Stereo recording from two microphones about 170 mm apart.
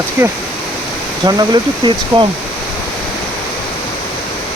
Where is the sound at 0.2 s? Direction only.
15° right (ahead or behind).